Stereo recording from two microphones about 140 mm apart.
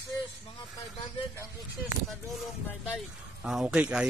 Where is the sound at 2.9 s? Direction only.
5° right (ahead or behind).